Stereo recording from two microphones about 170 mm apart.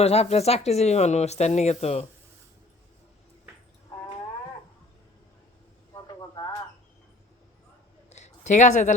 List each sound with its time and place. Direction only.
0.0 s speech: 35° left (ahead or behind)
5.9 s vehicle: 25° left (ahead or behind)
8.1 s a sound: 45° left (ahead or behind)